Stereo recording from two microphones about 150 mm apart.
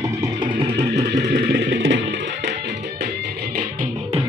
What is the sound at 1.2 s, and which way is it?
Music, 85° right.